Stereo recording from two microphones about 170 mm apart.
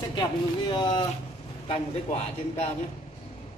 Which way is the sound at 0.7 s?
30° left (ahead or behind).